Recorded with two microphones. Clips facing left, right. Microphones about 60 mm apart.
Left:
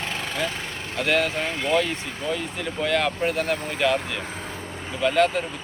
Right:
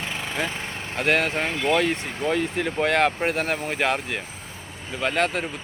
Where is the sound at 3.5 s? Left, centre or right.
Left.